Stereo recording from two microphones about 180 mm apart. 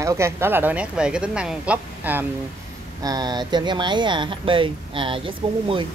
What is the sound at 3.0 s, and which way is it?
Speech, 20° right (ahead or behind).